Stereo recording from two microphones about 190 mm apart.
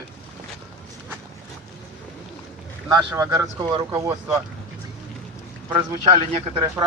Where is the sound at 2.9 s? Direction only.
15° right (ahead or behind).